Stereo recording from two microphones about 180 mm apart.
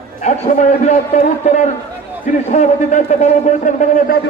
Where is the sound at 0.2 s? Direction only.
40° left (ahead or behind).